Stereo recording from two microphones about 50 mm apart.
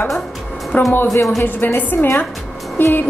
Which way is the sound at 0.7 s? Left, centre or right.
Left.